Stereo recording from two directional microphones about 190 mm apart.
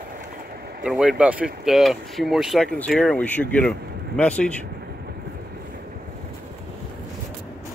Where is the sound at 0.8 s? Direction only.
5° right (ahead or behind).